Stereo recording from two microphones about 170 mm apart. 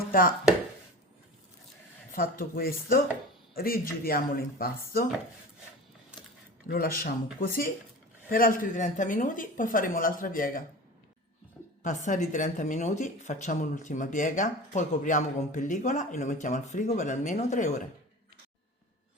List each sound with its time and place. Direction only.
0.1 s speech: 55° left (ahead or behind)
2.1 s speech: 55° left (ahead or behind)
6.7 s speech: 60° left (ahead or behind)
11.8 s speech: 45° left (ahead or behind)